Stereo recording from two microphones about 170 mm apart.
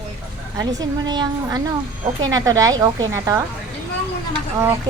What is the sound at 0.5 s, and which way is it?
Speech, 20° right (ahead or behind).